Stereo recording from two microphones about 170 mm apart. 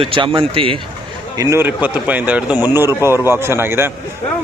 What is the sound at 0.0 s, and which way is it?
Speech, 30° right (ahead or behind).